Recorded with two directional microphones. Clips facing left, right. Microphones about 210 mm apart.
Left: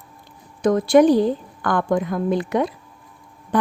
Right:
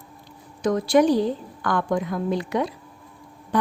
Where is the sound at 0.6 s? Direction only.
55° left (ahead or behind).